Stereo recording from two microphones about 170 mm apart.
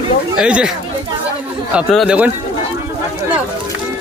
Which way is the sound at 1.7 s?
5° right (ahead or behind).